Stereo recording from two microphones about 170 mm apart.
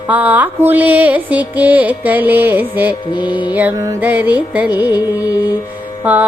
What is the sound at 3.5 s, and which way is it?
Music, 10° right (ahead or behind).